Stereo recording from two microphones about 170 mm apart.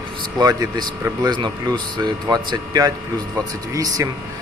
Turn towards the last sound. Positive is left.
turn(degrees=-20)  # may be behind; listen again after turning